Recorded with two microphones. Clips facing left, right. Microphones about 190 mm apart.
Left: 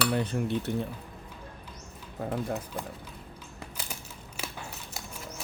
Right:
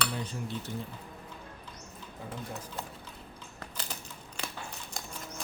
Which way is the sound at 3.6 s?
10° left (ahead or behind).